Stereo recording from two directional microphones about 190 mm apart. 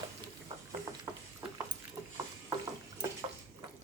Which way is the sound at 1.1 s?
10° right (ahead or behind).